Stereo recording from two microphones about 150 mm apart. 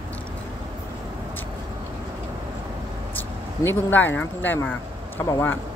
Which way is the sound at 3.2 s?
10° left (ahead or behind).